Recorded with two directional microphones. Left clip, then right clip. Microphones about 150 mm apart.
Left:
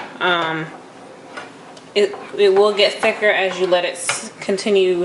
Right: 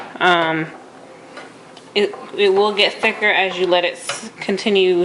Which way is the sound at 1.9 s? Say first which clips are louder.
Left 1 dB; 15° right (ahead or behind).